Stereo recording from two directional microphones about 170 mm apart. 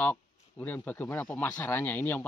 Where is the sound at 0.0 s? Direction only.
10° left (ahead or behind).